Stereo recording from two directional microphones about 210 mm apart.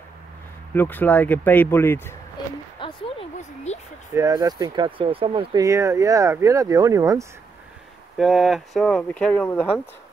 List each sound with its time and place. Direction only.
0.7 s speech: 10° left (ahead or behind)
2.8 s a sound: 30° left (ahead or behind)
4.1 s speech: 15° right (ahead or behind)
8.2 s speech: centre (ahead or behind)